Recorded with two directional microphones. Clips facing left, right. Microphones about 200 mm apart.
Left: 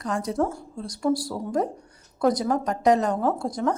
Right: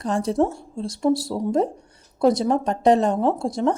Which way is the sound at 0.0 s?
30° right (ahead or behind).